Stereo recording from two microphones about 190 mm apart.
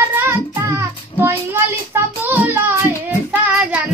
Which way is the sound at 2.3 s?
10° right (ahead or behind).